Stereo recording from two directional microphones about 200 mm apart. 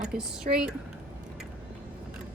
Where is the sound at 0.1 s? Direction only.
5° right (ahead or behind).